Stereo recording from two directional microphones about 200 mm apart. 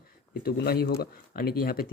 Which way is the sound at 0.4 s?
50° left (ahead or behind).